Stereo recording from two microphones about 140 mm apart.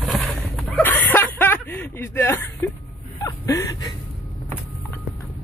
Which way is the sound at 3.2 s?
25° left (ahead or behind).